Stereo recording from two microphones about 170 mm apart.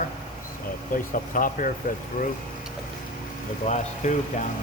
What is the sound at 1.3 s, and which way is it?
Speech, 55° left (ahead or behind).